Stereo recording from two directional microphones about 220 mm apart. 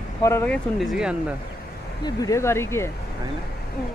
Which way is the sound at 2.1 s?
15° left (ahead or behind).